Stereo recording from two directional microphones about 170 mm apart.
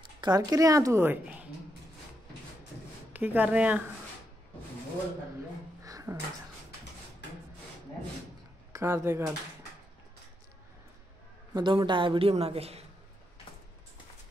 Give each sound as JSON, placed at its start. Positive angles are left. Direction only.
{"t": 0.2, "sound": "a woman's voice", "side_deg": -25}
{"t": 3.1, "sound": "speech", "side_deg": -10}
{"t": 5.9, "sound": "music", "side_deg": -20}
{"t": 8.7, "sound": "speech", "side_deg": -15}
{"t": 11.5, "sound": "a man's voice", "side_deg": -25}